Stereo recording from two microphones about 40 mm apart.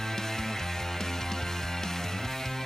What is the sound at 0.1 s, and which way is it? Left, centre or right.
Music, centre.